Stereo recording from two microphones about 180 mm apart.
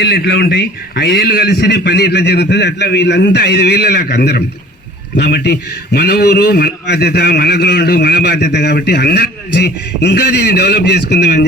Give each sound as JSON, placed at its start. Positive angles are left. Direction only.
{"t": 0.0, "sound": "a man's voice", "side_deg": 65}